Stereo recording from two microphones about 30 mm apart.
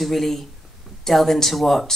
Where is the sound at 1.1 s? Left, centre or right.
Centre.